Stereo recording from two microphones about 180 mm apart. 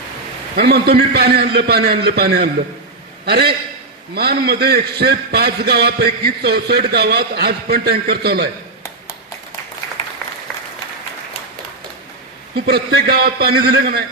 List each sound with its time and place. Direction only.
0.5 s a man's voice: 60° right (ahead or behind)
12.5 s a man's voice: 60° right (ahead or behind)